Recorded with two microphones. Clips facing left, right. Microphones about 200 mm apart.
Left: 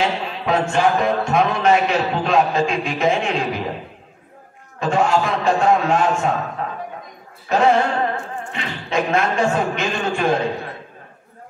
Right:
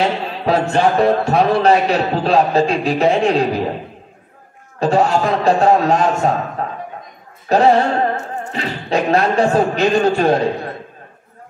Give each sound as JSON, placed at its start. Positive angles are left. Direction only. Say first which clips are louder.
{"t": 0.0, "sound": "a man's voice", "louder": "right 4 dB", "side_deg": -35}
{"t": 4.7, "sound": "a man's voice", "louder": "right 3 dB", "side_deg": -35}